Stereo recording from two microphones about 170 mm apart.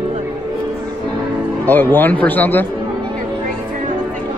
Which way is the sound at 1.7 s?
10° left (ahead or behind).